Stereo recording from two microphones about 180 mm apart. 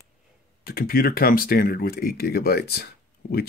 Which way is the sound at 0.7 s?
55° left (ahead or behind).